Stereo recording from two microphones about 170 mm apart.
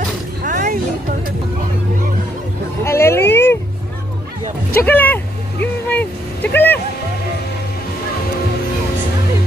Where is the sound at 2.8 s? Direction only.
15° left (ahead or behind).